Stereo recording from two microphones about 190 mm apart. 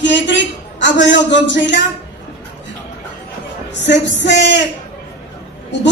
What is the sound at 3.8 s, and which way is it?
Speech, 65° left (ahead or behind).